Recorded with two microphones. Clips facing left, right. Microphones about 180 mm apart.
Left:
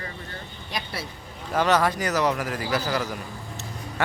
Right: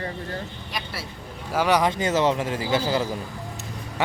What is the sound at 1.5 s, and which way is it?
Speech, 10° right (ahead or behind).